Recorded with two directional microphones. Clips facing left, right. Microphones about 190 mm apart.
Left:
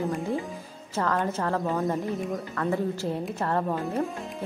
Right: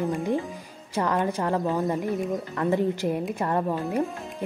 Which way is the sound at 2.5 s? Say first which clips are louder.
Right 4 dB; 20° right (ahead or behind).